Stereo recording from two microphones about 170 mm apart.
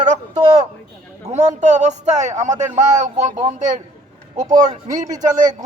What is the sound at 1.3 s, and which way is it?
A man's voice, 45° right (ahead or behind).